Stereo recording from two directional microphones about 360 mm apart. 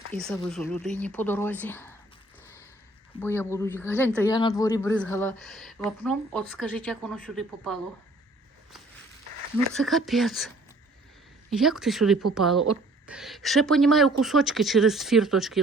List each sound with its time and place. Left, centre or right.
0.1 s speech: centre
3.2 s speech: centre
9.7 s speech: centre
11.5 s speech: centre